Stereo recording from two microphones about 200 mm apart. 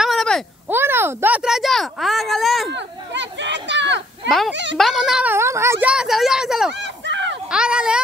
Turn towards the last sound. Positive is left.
turn(degrees=-5)  # may be behind; listen again after turning